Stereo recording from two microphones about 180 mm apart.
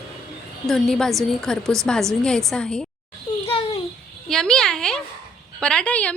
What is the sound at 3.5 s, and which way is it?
Babbling, 30° left (ahead or behind).